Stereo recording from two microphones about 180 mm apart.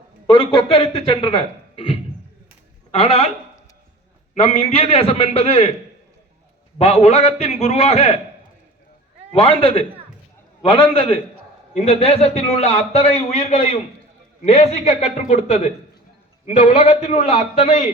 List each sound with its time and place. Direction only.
0.3 s a man's voice: 30° left (ahead or behind)
4.4 s a man's voice: 35° left (ahead or behind)
6.7 s a man's voice: 35° left (ahead or behind)
9.3 s a man's voice: 30° left (ahead or behind)